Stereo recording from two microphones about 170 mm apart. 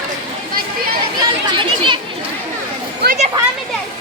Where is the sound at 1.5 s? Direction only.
30° right (ahead or behind).